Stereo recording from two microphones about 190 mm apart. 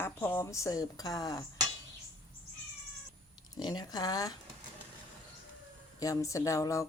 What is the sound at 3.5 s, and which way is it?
Speech, 20° left (ahead or behind).